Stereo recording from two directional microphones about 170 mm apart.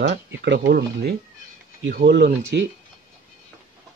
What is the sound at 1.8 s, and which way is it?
Speech, 80° right.